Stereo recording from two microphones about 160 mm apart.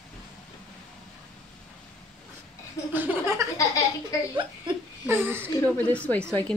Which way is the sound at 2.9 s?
15° right (ahead or behind).